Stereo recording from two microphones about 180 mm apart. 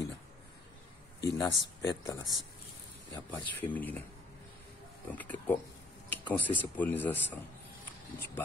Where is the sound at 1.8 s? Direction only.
20° left (ahead or behind).